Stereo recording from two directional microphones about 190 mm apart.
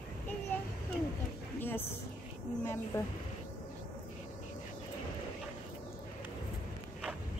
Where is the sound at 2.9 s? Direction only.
15° left (ahead or behind).